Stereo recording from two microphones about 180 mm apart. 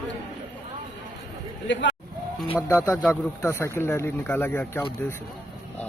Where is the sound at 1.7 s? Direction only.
80° left.